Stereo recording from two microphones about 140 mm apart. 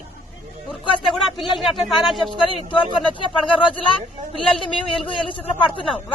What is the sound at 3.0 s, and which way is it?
Speech, 35° left (ahead or behind).